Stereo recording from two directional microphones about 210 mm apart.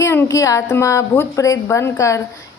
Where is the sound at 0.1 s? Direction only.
15° left (ahead or behind).